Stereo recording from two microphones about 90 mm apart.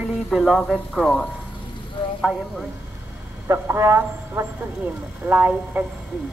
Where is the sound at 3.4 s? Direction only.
30° right (ahead or behind).